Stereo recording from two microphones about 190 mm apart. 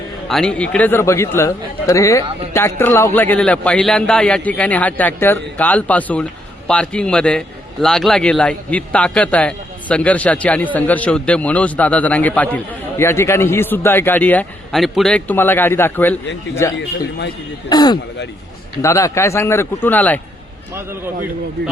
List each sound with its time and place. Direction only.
0.3 s a man's voice: 5° left (ahead or behind)